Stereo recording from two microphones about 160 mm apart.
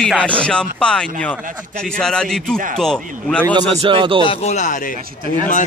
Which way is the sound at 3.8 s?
35° right (ahead or behind).